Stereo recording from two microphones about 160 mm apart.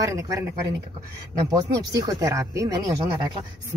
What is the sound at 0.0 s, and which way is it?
Speech, 20° right (ahead or behind).